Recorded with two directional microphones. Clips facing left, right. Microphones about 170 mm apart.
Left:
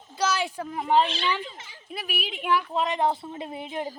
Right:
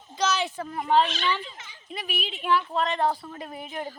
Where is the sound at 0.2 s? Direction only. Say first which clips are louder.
Even; 10° left (ahead or behind).